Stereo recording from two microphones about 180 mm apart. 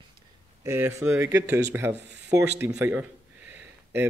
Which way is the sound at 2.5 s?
10° right (ahead or behind).